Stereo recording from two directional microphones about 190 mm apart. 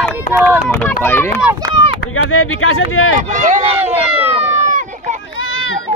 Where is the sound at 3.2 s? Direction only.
40° right (ahead or behind).